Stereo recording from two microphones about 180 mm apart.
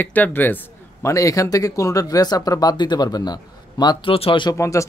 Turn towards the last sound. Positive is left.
turn(degrees=15)  # may be behind; listen again after turning